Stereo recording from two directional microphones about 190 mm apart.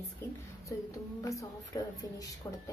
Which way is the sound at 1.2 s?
15° left (ahead or behind).